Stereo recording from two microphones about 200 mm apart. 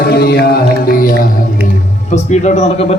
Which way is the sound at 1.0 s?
45° left (ahead or behind).